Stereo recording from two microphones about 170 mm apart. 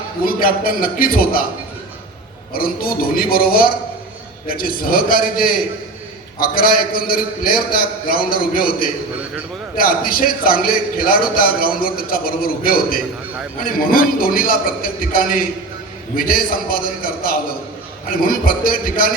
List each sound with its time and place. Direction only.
0.3 s a man's voice: 60° left (ahead or behind)
2.5 s a man's voice: 60° left (ahead or behind)